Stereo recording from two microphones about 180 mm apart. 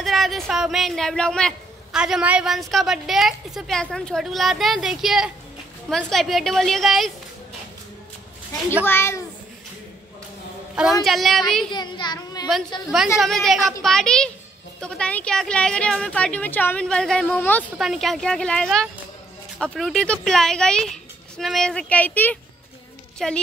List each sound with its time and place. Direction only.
0.0 s a man's voice: centre (ahead or behind)
8.8 s speech: 15° left (ahead or behind)
11.1 s a man's voice: centre (ahead or behind)
11.7 s a child's voice: 25° left (ahead or behind)
13.2 s a man's voice: centre (ahead or behind)
17.6 s a man's voice: centre (ahead or behind)